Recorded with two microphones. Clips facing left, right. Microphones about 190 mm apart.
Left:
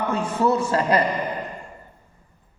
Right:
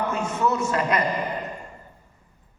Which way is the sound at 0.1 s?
30° left (ahead or behind).